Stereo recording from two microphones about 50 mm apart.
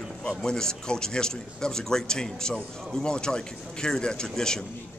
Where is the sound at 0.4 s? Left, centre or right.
Centre.